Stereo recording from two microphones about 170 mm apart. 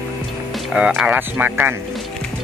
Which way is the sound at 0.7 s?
5° right (ahead or behind).